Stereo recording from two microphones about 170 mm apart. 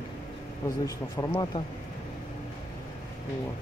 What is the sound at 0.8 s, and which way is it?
Speech, 15° left (ahead or behind).